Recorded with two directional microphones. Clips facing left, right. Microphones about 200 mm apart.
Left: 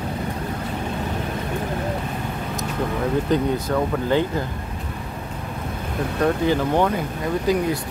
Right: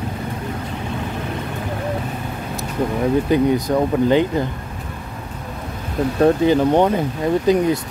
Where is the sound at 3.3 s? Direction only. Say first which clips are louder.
Right 4 dB; 15° right (ahead or behind).